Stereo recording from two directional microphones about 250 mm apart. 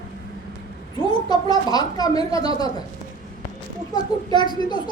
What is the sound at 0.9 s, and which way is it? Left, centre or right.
A child's voice, centre.